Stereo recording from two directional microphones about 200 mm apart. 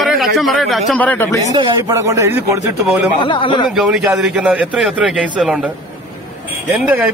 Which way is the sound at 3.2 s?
25° left (ahead or behind).